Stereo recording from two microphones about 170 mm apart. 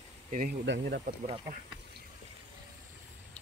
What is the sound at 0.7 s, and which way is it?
Speech, 70° right (ahead or behind).